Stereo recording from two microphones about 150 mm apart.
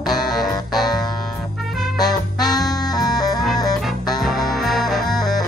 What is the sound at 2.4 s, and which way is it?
Music, 25° left (ahead or behind).